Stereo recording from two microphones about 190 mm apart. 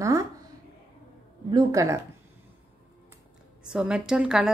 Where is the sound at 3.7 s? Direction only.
5° right (ahead or behind).